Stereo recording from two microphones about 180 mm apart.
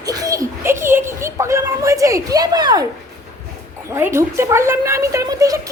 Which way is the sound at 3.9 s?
15° right (ahead or behind).